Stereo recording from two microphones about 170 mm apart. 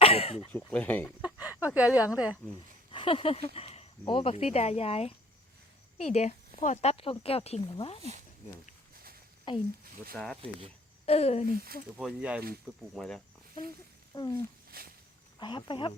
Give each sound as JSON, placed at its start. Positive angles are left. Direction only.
{"t": 0.0, "sound": "a sound", "side_deg": 35}
{"t": 0.5, "sound": "speech", "side_deg": 10}
{"t": 1.2, "sound": "a sound", "side_deg": -10}
{"t": 1.7, "sound": "speech", "side_deg": -10}
{"t": 2.9, "sound": "speech", "side_deg": 30}
{"t": 3.5, "sound": "a sound", "side_deg": 35}
{"t": 6.0, "sound": "speech", "side_deg": 40}
{"t": 9.5, "sound": "speech", "side_deg": 25}
{"t": 11.0, "sound": "speech", "side_deg": 35}
{"t": 11.5, "sound": "speech", "side_deg": -60}
{"t": 11.9, "sound": "speech", "side_deg": -5}
{"t": 14.1, "sound": "speech", "side_deg": 20}
{"t": 14.7, "sound": "speech", "side_deg": -60}
{"t": 15.4, "sound": "speech", "side_deg": 25}